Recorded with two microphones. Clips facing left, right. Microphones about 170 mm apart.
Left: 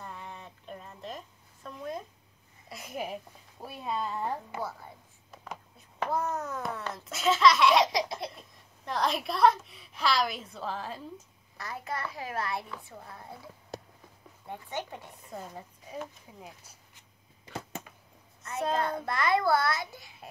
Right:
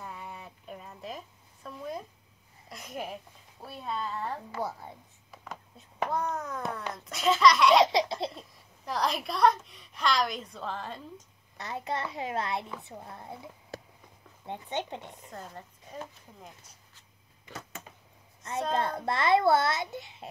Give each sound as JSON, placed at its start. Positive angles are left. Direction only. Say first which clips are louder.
{"t": 0.0, "sound": "a sound", "louder": "right 1 dB", "side_deg": -5}
{"t": 3.6, "sound": "speech", "louder": "left 2 dB", "side_deg": 10}
{"t": 4.6, "sound": "a woman's voice", "louder": "right 2 dB", "side_deg": -20}
{"t": 6.0, "sound": "a woman's voice", "louder": "left 1 dB", "side_deg": 5}
{"t": 7.8, "sound": "laughter", "louder": "right 4 dB", "side_deg": -25}
{"t": 8.8, "sound": "a woman's voice", "louder": "left 1 dB", "side_deg": 0}
{"t": 11.5, "sound": "a woman's voice", "louder": "right 3 dB", "side_deg": -20}
{"t": 15.3, "sound": "speech", "louder": "left 4 dB", "side_deg": 10}
{"t": 17.5, "sound": "a sound", "louder": "left 4 dB", "side_deg": 30}
{"t": 18.8, "sound": "a woman's voice", "louder": "right 1 dB", "side_deg": -25}